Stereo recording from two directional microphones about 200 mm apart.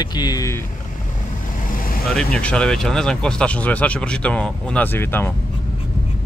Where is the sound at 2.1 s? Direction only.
5° left (ahead or behind).